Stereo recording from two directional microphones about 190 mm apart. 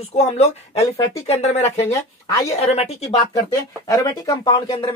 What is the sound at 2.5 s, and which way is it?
Speech, 35° left (ahead or behind).